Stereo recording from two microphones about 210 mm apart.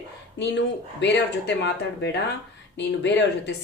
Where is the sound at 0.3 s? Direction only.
55° left (ahead or behind).